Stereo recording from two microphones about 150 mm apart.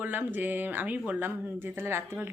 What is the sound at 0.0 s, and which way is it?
Speech, 10° right (ahead or behind).